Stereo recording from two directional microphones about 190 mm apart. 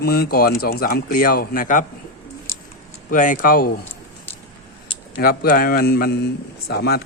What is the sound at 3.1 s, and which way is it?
Speech, 45° left (ahead or behind).